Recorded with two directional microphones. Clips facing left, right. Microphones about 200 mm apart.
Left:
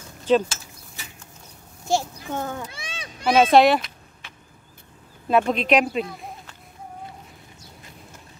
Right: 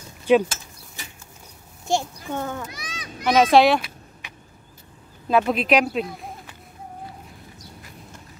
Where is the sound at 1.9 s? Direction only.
Centre (ahead or behind).